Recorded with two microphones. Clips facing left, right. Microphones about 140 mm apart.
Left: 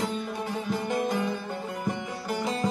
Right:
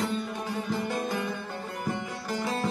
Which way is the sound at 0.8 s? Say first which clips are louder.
Left 3 dB; 15° left (ahead or behind).